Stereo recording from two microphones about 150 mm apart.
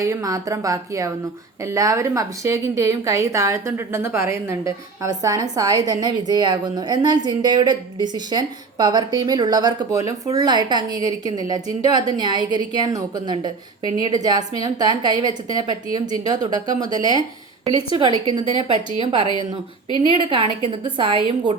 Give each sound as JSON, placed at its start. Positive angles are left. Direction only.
{"t": 0.0, "sound": "a woman's voice", "side_deg": -20}